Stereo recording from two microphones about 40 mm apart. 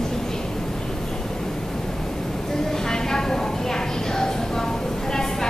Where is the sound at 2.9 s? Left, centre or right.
Centre.